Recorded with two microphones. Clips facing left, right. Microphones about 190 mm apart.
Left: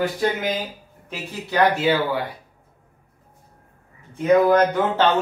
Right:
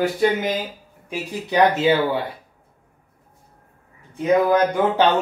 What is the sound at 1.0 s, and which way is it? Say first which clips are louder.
Speech: right 4 dB; 20° right (ahead or behind).